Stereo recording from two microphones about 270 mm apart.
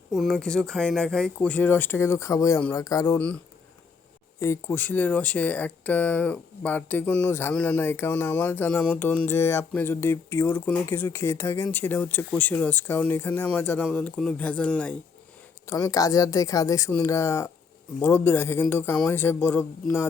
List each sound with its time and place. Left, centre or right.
0.1 s speech: centre
4.4 s speech: centre